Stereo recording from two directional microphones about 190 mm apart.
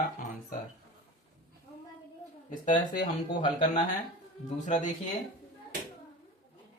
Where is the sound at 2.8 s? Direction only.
20° left (ahead or behind).